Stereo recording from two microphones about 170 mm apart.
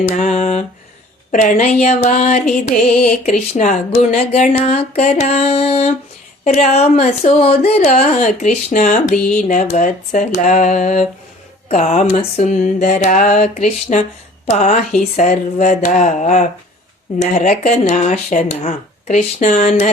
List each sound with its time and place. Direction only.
0.1 s speech: 45° left (ahead or behind)
2.9 s music: 5° left (ahead or behind)
3.5 s speech: 45° left (ahead or behind)